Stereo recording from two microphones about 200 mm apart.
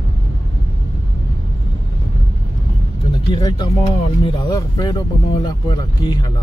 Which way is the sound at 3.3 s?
20° left (ahead or behind).